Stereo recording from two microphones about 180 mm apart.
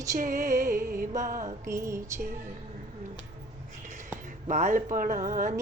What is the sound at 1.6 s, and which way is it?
Music, 15° right (ahead or behind).